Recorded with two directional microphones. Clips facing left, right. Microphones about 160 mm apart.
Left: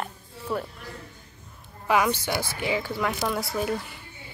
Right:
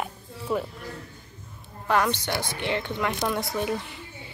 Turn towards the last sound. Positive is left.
turn(degrees=0)  # may be behind; listen again after turning